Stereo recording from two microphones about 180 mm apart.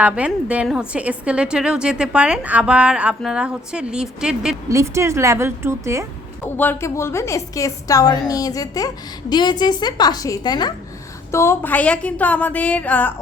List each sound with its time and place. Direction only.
0.0 s a woman's voice: 5° right (ahead or behind)
4.7 s a woman's voice: 15° right (ahead or behind)
6.6 s a woman's voice: 10° left (ahead or behind)